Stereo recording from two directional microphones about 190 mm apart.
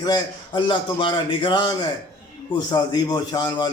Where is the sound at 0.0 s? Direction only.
25° left (ahead or behind).